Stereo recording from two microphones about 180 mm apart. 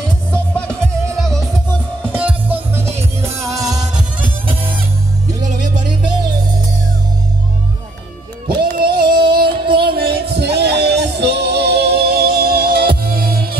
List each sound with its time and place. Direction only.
0.3 s music: 5° left (ahead or behind)
2.1 s music: 10° right (ahead or behind)
8.7 s a sound: 55° right (ahead or behind)
9.1 s music: 55° right (ahead or behind)